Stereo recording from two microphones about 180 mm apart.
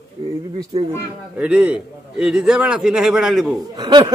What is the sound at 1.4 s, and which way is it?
A man's voice, 5° right (ahead or behind).